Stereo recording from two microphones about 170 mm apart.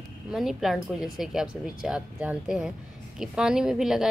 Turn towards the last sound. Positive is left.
turn(degrees=0)  # may be behind; listen again after turning